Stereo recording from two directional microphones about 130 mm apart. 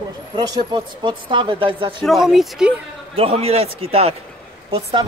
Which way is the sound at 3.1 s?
50° right (ahead or behind).